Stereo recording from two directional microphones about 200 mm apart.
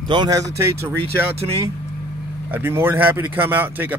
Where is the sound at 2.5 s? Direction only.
10° right (ahead or behind).